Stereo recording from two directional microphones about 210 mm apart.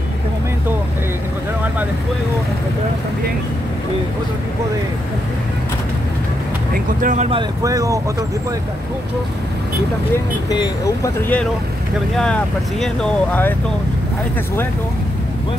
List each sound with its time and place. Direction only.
6.7 s speech: 40° right (ahead or behind); by 8.3 s 15° right (ahead or behind)
12.8 s speech: 5° left (ahead or behind)